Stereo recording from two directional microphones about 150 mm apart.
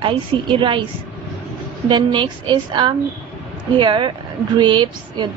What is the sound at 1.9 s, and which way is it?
Speech, 35° right (ahead or behind).